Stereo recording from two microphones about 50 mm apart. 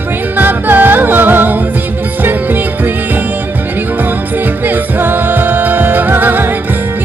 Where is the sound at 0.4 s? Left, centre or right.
Right.